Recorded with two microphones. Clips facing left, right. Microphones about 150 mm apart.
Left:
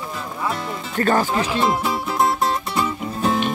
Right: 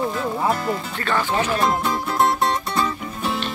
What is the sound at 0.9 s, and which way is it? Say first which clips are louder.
Speech: left 9 dB; 45° left (ahead or behind).